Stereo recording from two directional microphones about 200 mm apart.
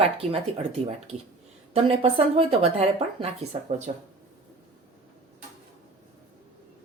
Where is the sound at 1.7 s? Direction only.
30° right (ahead or behind).